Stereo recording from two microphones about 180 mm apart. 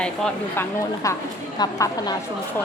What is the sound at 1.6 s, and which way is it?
Speech, 20° left (ahead or behind).